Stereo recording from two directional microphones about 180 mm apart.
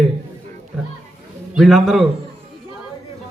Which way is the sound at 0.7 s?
5° right (ahead or behind).